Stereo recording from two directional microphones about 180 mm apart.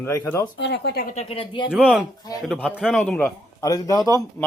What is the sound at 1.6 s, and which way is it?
Speech, 5° right (ahead or behind).